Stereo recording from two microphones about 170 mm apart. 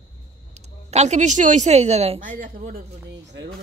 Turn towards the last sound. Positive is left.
turn(degrees=-85)